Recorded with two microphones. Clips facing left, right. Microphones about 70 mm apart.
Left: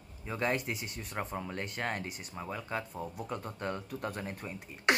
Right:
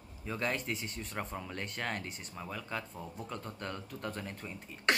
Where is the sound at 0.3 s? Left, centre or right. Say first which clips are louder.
Left 3 dB; centre.